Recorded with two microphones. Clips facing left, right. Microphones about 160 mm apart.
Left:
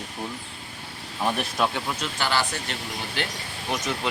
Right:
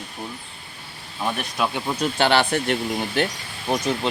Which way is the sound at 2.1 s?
65° right (ahead or behind).